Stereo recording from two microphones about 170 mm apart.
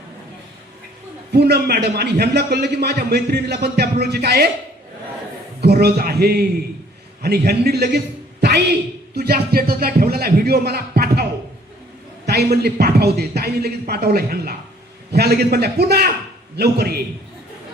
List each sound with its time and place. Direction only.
1.3 s a man's voice: 70° right (ahead or behind)
5.5 s a man's voice: 70° right (ahead or behind)
12.2 s a sound: 70° right (ahead or behind)
12.6 s a man's voice: 65° right (ahead or behind)